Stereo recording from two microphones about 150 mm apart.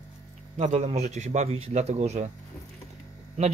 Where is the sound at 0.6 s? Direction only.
45° right (ahead or behind).